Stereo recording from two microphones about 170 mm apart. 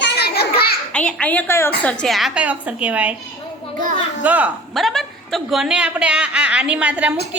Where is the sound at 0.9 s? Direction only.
5° left (ahead or behind).